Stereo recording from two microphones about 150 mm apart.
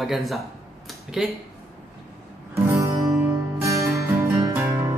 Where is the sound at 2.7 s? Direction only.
20° right (ahead or behind).